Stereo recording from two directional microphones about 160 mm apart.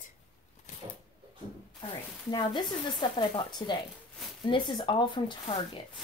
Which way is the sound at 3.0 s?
30° left (ahead or behind).